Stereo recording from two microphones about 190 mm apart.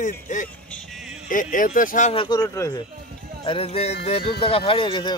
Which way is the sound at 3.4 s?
30° left (ahead or behind).